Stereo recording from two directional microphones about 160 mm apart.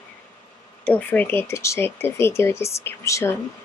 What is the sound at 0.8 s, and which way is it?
Speech, 10° left (ahead or behind).